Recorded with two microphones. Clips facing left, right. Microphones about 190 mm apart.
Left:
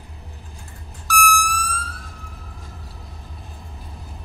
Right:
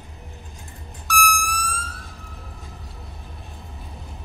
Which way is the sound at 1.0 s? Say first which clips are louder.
Left 3 dB; centre (ahead or behind).